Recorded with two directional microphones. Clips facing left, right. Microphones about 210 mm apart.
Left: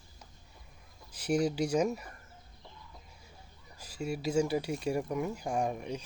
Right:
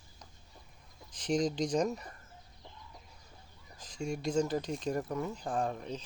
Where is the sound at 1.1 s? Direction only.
10° left (ahead or behind).